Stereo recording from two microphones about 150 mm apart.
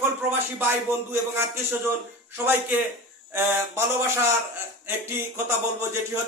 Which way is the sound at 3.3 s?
15° right (ahead or behind).